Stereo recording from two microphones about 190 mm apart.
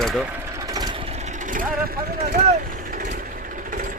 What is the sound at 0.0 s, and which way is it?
Speech, centre (ahead or behind).